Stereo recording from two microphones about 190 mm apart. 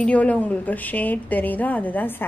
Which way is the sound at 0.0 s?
5° left (ahead or behind).